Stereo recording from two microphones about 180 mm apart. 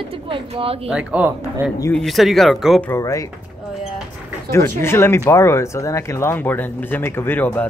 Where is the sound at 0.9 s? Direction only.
5° right (ahead or behind).